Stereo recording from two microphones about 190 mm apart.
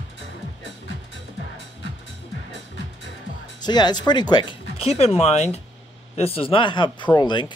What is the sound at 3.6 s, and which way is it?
Speech, 20° left (ahead or behind).